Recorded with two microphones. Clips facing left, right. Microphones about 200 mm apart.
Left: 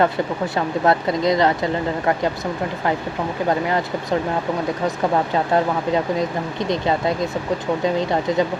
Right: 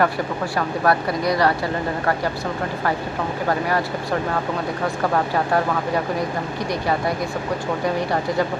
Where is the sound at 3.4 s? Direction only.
20° left (ahead or behind).